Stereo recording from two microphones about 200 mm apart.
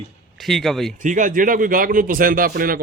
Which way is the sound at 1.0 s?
40° right (ahead or behind).